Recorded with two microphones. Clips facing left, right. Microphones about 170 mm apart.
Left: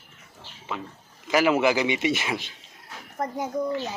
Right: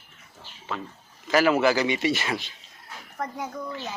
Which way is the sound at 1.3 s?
15° left (ahead or behind).